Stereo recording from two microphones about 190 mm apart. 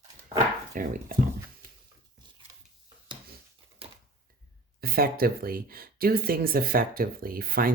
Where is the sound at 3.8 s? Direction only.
30° right (ahead or behind).